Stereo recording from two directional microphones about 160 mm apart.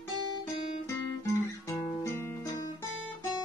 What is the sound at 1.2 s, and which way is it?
Guitar, 20° left (ahead or behind).